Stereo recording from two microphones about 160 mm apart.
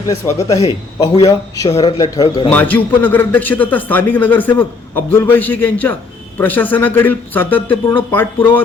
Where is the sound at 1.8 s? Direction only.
25° left (ahead or behind).